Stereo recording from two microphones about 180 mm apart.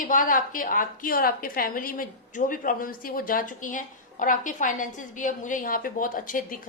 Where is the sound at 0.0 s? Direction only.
45° left (ahead or behind).